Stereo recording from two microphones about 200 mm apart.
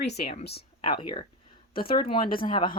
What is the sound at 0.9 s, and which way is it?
Speech, 25° left (ahead or behind).